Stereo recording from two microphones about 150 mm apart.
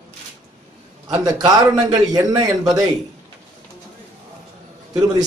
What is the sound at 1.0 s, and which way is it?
A man's voice, 25° right (ahead or behind).